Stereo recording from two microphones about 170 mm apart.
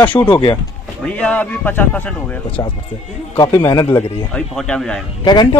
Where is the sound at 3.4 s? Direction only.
25° left (ahead or behind).